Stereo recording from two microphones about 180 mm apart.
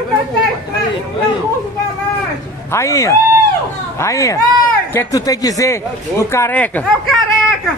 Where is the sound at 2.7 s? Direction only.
15° left (ahead or behind).